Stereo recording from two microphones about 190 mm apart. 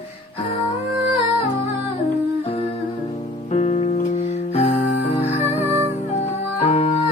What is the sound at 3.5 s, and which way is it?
Music, 35° left (ahead or behind).